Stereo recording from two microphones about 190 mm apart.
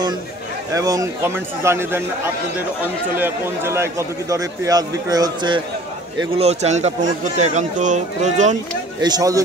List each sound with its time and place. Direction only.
0.7 s a man's voice: 15° right (ahead or behind)
6.3 s speech: 35° right (ahead or behind)
9.0 s speech: 20° right (ahead or behind)